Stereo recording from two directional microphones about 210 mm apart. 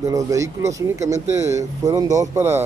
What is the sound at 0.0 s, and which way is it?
Speech, 15° right (ahead or behind).